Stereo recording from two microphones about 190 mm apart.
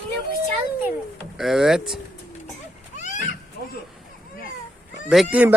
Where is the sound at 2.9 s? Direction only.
40° left (ahead or behind).